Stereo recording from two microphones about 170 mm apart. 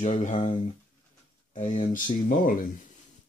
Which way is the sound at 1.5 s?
45° left (ahead or behind).